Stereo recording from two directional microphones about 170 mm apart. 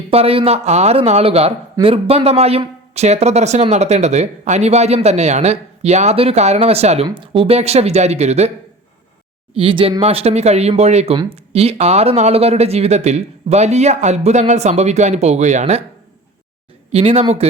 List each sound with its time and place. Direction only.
0.1 s a man's voice: 35° right (ahead or behind)
9.6 s a man's voice: 30° right (ahead or behind)
16.9 s a man's voice: 35° right (ahead or behind)